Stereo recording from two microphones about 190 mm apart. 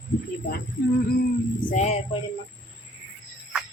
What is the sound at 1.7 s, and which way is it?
Speech, 40° left (ahead or behind).